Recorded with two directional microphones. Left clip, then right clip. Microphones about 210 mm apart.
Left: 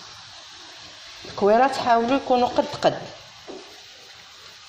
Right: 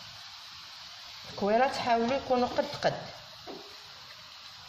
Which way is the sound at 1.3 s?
25° left (ahead or behind).